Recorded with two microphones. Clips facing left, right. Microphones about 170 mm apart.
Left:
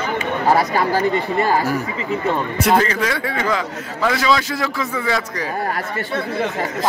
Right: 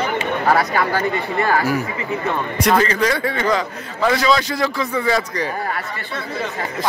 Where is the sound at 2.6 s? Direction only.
5° left (ahead or behind).